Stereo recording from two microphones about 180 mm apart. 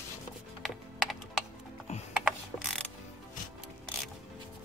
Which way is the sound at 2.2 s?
Centre (ahead or behind).